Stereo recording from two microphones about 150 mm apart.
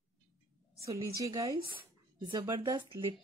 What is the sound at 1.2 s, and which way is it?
Speech, 20° right (ahead or behind).